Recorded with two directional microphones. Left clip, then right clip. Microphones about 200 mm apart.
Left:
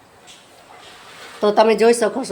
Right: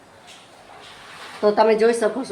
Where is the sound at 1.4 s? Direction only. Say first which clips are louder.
Left 3 dB; 45° left (ahead or behind).